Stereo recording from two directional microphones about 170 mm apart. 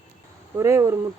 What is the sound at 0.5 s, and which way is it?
Speech, 15° right (ahead or behind).